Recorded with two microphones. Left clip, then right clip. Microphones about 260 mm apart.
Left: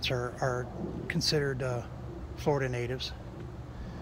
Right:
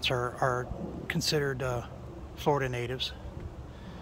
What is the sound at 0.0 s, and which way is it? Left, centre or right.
Speech, centre.